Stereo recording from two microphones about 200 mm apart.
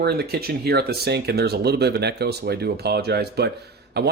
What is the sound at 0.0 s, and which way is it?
Speech, 55° right (ahead or behind).